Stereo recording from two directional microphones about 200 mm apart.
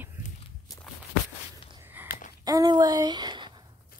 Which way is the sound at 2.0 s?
40° left (ahead or behind).